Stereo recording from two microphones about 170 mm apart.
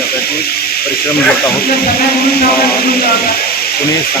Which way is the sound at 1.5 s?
65° left (ahead or behind).